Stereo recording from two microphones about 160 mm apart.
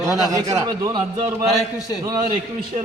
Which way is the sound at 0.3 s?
20° right (ahead or behind).